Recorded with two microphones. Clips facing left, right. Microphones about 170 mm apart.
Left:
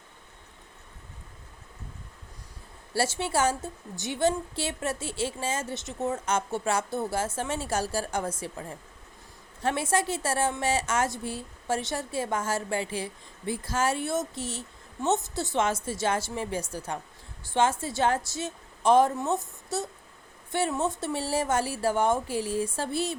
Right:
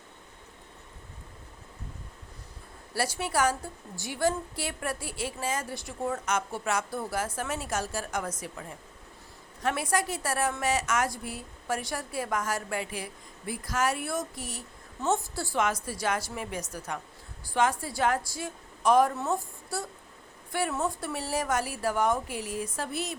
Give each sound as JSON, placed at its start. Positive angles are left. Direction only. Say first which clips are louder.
{"t": 2.9, "sound": "a woman's voice", "louder": "left 2 dB", "side_deg": 25}